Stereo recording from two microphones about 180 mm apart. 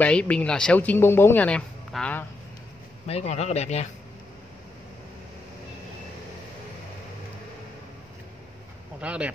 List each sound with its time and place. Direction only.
0.0 s speech: 5° left (ahead or behind)
3.1 s a man's voice: 35° left (ahead or behind)
9.0 s speech: 5° right (ahead or behind)